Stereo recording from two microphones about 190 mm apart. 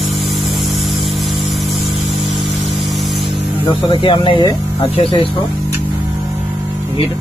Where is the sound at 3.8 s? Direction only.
25° left (ahead or behind).